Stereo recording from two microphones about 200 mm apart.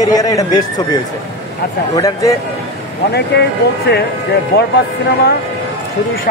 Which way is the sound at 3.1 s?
55° left (ahead or behind).